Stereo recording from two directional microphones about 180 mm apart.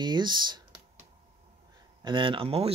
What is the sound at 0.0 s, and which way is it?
Speech, 25° right (ahead or behind).